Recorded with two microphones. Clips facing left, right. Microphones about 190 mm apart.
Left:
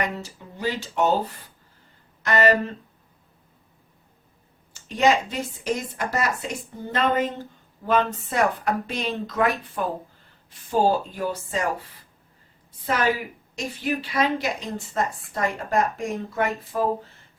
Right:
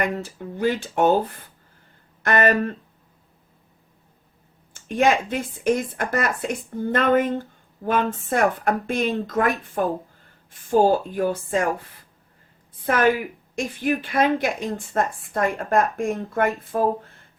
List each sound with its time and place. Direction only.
0.0 s speech: 50° right (ahead or behind)
2.2 s speech: 55° right (ahead or behind)
4.7 s speech: 50° right (ahead or behind)
12.8 s speech: 50° right (ahead or behind)